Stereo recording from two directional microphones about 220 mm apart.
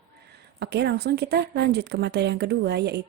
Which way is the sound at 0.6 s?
50° right (ahead or behind).